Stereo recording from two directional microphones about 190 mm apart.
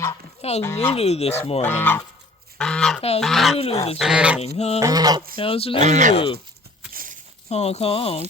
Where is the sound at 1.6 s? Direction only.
10° left (ahead or behind).